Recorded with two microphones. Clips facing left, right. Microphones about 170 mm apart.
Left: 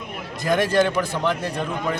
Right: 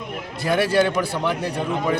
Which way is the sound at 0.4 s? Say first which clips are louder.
Even; 10° right (ahead or behind).